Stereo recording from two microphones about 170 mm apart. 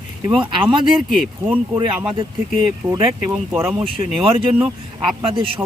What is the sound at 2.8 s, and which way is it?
Speech, 25° right (ahead or behind).